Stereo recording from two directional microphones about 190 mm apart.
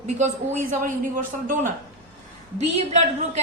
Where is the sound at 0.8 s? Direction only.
45° right (ahead or behind).